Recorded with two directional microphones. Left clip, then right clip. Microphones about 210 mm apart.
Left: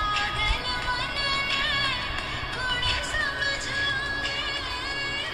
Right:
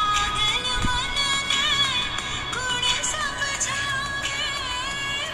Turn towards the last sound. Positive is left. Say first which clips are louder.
# right 1 dB
turn(degrees=-25)  # may be behind; listen again after turning